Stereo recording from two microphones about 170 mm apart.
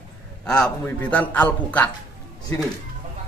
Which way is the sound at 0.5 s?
5° left (ahead or behind).